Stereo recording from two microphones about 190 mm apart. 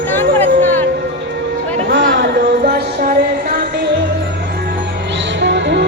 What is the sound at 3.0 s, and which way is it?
Music, 55° right (ahead or behind).